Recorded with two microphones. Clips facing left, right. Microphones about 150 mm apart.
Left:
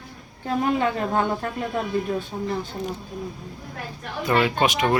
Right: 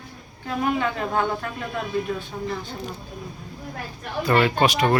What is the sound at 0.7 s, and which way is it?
Speech, 35° left (ahead or behind).